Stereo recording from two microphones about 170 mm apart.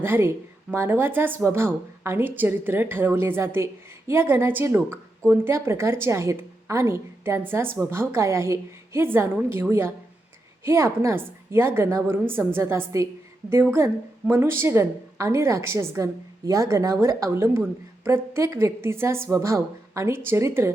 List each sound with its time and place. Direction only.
0.0 s a woman's voice: 15° right (ahead or behind)